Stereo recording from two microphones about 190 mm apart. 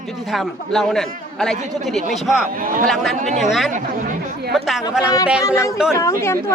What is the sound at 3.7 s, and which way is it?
Speech, 45° right (ahead or behind).